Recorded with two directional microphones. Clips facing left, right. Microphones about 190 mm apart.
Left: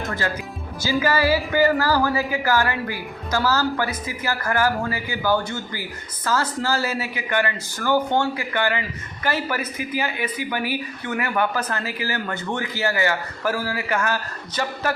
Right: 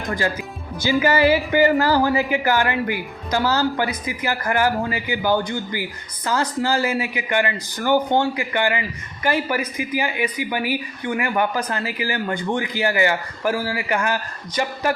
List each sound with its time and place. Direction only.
0.0 s speech: 15° right (ahead or behind)